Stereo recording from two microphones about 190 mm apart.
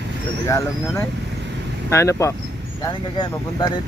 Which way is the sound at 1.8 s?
15° left (ahead or behind).